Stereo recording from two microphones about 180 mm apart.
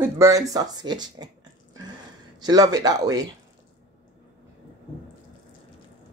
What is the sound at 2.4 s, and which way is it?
Speech, 20° right (ahead or behind).